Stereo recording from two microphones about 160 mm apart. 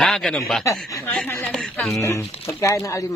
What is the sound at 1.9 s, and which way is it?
Speech, 20° left (ahead or behind).